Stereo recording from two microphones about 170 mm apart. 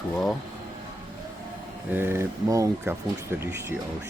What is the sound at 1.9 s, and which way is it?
Speech, 15° right (ahead or behind).